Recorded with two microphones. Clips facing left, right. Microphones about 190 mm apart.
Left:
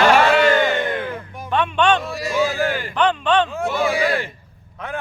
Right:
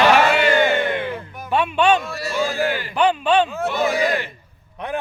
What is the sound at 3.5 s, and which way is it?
Speech, 10° left (ahead or behind).